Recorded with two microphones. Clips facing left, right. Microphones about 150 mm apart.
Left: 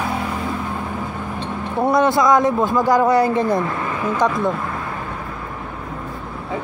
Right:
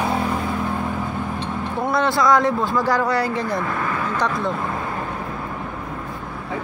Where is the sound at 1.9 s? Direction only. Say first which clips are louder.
Left 2 dB; 15° left (ahead or behind).